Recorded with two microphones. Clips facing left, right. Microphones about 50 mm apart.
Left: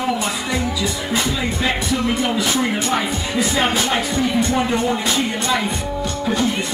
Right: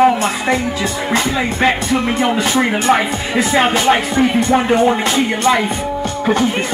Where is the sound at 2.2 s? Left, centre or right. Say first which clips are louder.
Right 4 dB; right.